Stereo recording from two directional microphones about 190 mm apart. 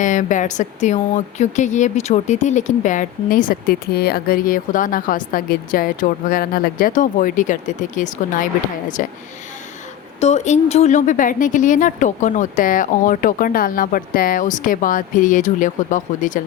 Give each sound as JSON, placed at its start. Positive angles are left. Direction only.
{"t": 0.0, "sound": "a woman's voice", "side_deg": 40}
{"t": 10.2, "sound": "speech", "side_deg": 35}